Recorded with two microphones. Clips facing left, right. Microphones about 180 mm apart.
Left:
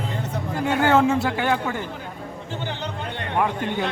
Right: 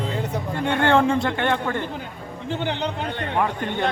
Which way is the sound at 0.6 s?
5° left (ahead or behind).